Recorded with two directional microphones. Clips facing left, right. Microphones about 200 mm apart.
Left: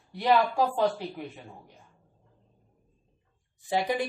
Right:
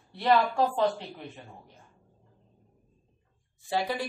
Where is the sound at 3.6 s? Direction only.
20° left (ahead or behind).